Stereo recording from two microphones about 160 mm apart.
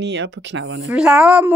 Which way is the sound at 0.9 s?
5° right (ahead or behind).